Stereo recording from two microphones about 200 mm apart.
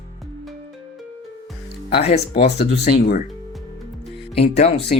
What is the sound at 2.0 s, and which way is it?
Speech, 30° left (ahead or behind).